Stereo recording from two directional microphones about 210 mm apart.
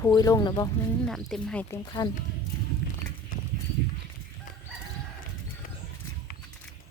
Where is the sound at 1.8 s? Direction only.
20° left (ahead or behind).